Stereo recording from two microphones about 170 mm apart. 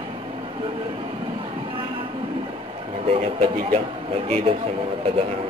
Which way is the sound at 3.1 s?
35° right (ahead or behind).